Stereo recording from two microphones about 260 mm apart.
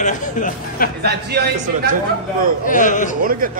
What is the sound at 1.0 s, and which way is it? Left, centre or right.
Speech, right.